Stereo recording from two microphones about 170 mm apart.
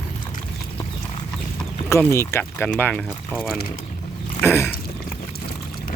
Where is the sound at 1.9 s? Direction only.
15° left (ahead or behind).